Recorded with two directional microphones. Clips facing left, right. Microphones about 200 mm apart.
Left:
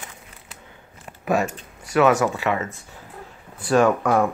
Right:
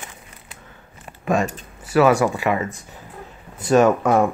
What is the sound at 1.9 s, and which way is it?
Speech, 5° right (ahead or behind).